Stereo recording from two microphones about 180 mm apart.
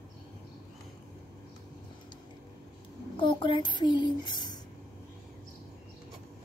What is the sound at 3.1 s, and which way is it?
Child singing, 30° left (ahead or behind).